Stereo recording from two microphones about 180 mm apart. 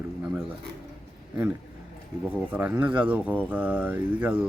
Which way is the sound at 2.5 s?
10° right (ahead or behind).